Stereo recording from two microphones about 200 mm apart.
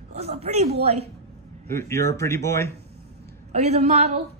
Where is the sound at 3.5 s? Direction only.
35° right (ahead or behind).